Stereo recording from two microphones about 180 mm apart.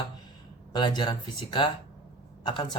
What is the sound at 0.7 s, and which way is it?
Speech, 25° left (ahead or behind).